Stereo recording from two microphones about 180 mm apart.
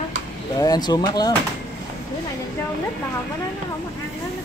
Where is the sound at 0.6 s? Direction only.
20° left (ahead or behind).